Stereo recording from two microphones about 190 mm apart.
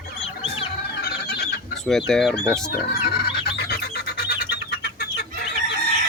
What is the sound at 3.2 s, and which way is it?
Bird, 55° left (ahead or behind).